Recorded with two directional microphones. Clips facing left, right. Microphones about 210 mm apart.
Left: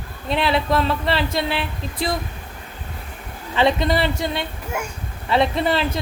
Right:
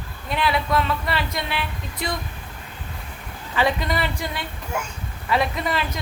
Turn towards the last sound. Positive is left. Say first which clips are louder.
# left 5 dB
turn(degrees=30)  # may be behind; listen again after turning